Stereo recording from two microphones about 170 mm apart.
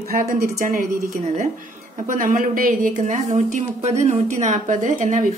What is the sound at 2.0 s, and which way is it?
Speech, 50° right (ahead or behind).